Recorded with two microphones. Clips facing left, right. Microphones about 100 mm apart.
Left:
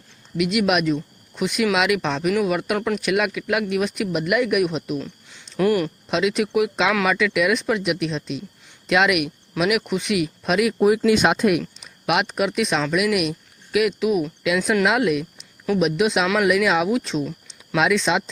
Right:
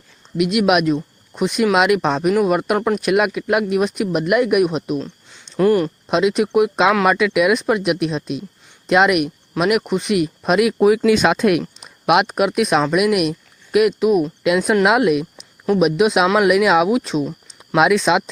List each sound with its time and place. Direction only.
0.3 s speech: 50° right (ahead or behind)
1.3 s speech: 35° right (ahead or behind)
2.7 s speech: 35° right (ahead or behind)
3.0 s speech: 45° right (ahead or behind)
4.9 s a sound: 20° right (ahead or behind)
6.1 s speech: 45° right (ahead or behind)
8.9 s speech: 40° right (ahead or behind)
10.7 s speech: 90° right
11.8 s speech: 55° right (ahead or behind)